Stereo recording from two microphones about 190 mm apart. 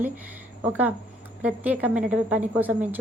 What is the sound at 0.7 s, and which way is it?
A woman's voice, 10° right (ahead or behind).